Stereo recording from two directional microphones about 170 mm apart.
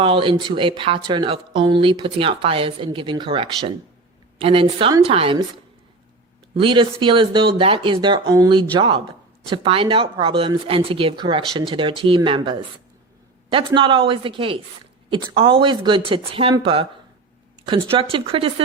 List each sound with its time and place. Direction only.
0.0 s a woman's voice: 30° right (ahead or behind)
6.6 s a woman's voice: 30° right (ahead or behind)